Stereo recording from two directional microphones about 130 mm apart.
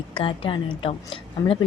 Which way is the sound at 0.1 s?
40° left (ahead or behind).